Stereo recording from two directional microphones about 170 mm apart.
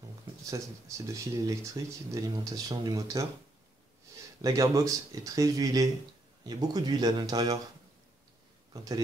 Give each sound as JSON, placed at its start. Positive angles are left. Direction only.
{"t": 0.5, "sound": "speech", "side_deg": -20}
{"t": 4.4, "sound": "speech", "side_deg": -20}